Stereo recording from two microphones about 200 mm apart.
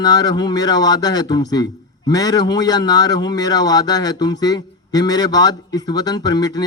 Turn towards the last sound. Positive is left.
turn(degrees=20)  # may be behind; listen again after turning